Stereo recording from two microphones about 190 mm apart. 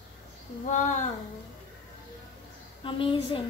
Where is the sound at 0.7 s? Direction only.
40° left (ahead or behind).